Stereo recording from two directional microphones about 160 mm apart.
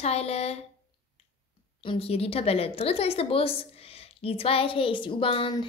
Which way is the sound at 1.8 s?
35° left (ahead or behind).